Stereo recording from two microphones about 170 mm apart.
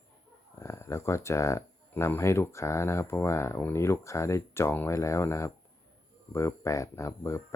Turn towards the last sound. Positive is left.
turn(degrees=15)  # may be behind; listen again after turning